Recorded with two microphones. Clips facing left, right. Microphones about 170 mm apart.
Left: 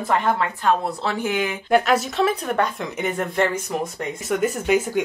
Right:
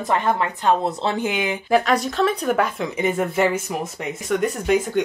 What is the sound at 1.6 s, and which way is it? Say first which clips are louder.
A woman's voice: even; centre (ahead or behind).